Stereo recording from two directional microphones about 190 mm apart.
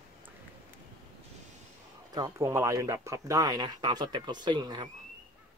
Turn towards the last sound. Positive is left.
turn(degrees=-25)  # may be behind; listen again after turning